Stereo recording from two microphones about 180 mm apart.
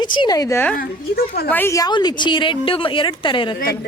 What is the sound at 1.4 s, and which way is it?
A woman's voice, 10° left (ahead or behind).